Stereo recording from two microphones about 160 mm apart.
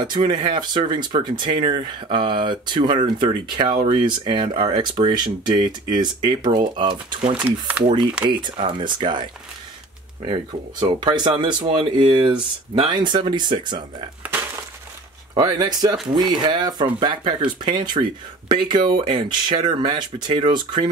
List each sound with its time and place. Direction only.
0.0 s speech: 30° right (ahead or behind)
7.3 s speech: 10° right (ahead or behind)
7.8 s speech: 30° right (ahead or behind)
10.2 s speech: 30° right (ahead or behind)
15.3 s speech: 25° right (ahead or behind)